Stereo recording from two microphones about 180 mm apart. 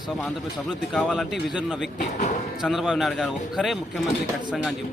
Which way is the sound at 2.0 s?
45° left (ahead or behind).